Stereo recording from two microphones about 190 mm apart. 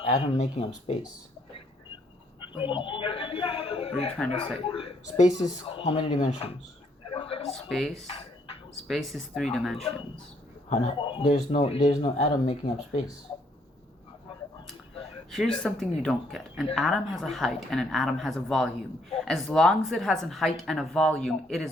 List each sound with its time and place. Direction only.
0.0 s speech: 35° left (ahead or behind)
2.6 s speech: 25° left (ahead or behind)
7.1 s a sound: 30° left (ahead or behind)
7.5 s speech: centre (ahead or behind)
8.1 s a sound: 30° left (ahead or behind)
8.9 s speech: centre (ahead or behind)
10.7 s speech: 35° left (ahead or behind)
15.3 s speech: centre (ahead or behind)